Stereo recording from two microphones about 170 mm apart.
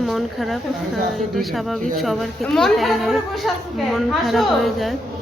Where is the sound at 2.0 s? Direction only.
Centre (ahead or behind).